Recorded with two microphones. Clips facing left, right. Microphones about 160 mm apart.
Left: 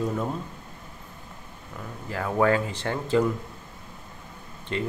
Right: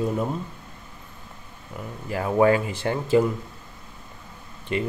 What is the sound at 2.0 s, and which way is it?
Speech, 15° right (ahead or behind).